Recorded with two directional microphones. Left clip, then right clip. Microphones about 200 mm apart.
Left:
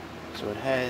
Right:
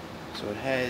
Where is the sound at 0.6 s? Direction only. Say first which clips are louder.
Left 1 dB; 5° left (ahead or behind).